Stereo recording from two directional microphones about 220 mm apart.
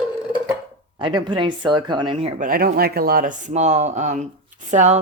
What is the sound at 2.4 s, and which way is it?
Speech, 40° right (ahead or behind).